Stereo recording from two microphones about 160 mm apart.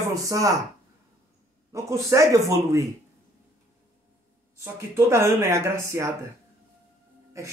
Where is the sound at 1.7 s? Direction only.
20° right (ahead or behind).